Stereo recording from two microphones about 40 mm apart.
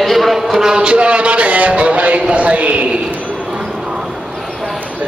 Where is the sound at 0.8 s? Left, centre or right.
Right.